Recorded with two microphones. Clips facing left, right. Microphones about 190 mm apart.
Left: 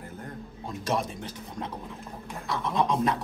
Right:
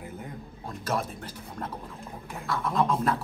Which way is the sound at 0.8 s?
Centre (ahead or behind).